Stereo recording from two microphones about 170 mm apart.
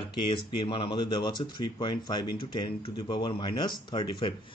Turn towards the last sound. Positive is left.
turn(degrees=30)  # may be behind; listen again after turning